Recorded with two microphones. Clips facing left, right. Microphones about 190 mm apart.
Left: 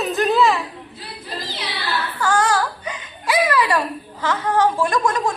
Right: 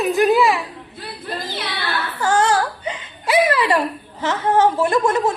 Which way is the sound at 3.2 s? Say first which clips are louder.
Right 2 dB; 25° right (ahead or behind).